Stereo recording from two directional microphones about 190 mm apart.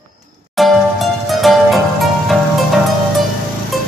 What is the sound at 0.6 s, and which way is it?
Music, centre (ahead or behind).